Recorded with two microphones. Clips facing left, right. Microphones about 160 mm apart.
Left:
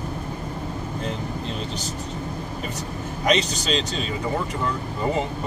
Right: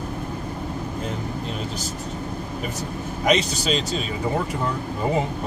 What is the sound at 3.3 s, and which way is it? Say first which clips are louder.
Speech: right 1 dB; 5° right (ahead or behind).